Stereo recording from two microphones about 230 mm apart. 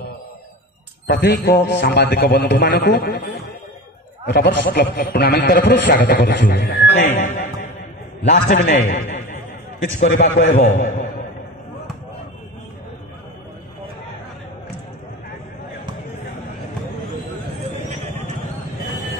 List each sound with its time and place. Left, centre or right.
1.0 s a man's voice: left
7.2 s a man's voice: left